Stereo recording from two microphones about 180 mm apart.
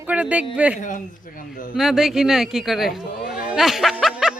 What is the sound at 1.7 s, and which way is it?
Speech, centre (ahead or behind).